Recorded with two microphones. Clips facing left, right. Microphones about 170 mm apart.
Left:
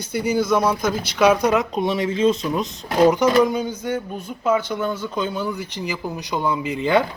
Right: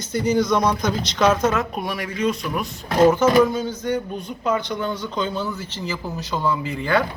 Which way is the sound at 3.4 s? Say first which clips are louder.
Even; 15° left (ahead or behind).